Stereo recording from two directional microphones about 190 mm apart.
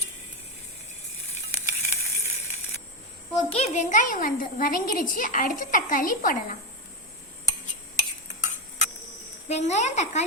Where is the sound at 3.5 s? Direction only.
35° left (ahead or behind).